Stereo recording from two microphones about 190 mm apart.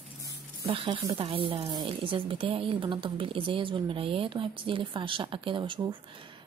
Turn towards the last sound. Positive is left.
turn(degrees=-25)  # may be behind; listen again after turning